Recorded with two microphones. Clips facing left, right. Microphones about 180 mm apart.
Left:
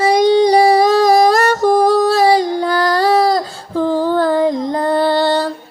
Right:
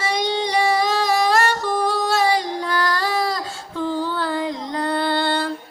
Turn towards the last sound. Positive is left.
turn(degrees=40)  # may be behind; listen again after turning